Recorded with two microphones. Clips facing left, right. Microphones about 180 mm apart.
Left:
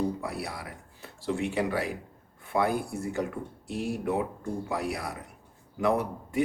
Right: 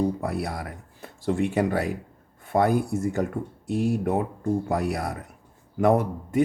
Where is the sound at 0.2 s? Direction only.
50° right (ahead or behind).